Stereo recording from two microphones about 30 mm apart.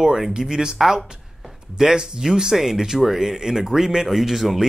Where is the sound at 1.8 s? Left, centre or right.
Right.